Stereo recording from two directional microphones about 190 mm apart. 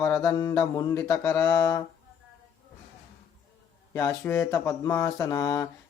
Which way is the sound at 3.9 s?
15° left (ahead or behind).